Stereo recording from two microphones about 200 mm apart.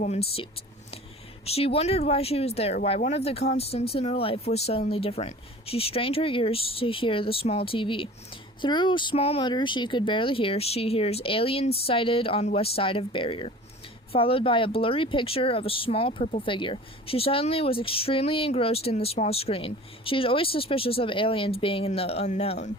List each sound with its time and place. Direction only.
0.0 s speech: 30° left (ahead or behind)
1.5 s speech: 30° left (ahead or behind)